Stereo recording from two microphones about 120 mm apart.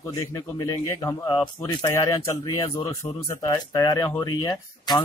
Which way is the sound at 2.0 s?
25° left (ahead or behind).